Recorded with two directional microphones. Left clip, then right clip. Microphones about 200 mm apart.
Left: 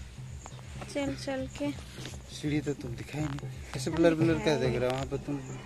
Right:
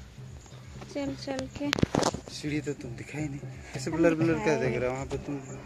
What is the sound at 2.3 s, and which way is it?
Speech, 25° left (ahead or behind).